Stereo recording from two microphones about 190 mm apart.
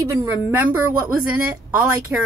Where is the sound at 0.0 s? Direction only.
15° right (ahead or behind).